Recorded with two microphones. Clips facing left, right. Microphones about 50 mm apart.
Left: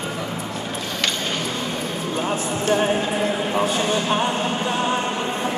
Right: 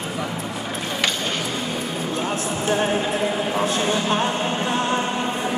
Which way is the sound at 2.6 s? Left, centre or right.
Centre.